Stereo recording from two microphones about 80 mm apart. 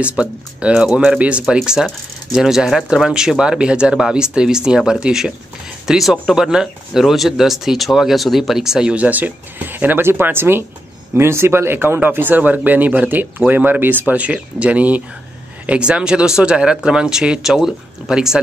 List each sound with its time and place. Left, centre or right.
0.0 s speech: centre